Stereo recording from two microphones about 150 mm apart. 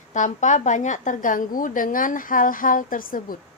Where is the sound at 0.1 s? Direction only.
55° left (ahead or behind).